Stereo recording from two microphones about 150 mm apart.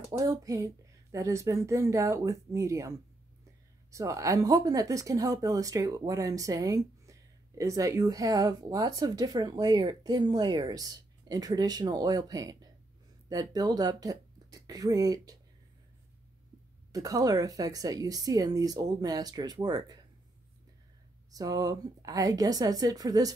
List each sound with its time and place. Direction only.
0.2 s speech: 25° right (ahead or behind)
3.9 s speech: 20° right (ahead or behind)
16.9 s speech: 25° right (ahead or behind)
21.3 s speech: 25° right (ahead or behind)